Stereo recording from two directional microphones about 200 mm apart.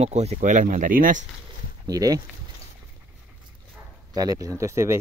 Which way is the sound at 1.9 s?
15° right (ahead or behind).